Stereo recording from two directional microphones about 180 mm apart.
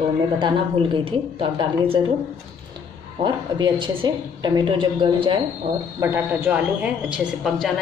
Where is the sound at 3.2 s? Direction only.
25° right (ahead or behind).